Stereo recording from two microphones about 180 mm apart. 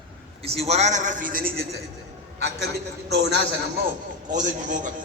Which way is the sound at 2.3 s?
65° right (ahead or behind).